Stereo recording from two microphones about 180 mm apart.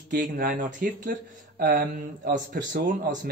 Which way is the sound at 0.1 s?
50° right (ahead or behind).